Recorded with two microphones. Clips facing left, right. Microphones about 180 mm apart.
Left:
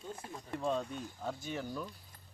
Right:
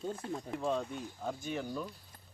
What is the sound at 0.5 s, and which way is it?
Speech, centre (ahead or behind).